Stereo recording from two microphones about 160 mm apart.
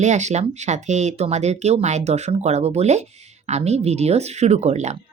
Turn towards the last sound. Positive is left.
turn(degrees=-45)  # may be behind; listen again after turning